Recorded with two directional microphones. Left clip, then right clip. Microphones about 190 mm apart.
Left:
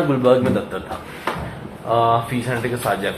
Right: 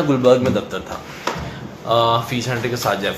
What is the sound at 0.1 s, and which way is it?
Speech, 20° right (ahead or behind).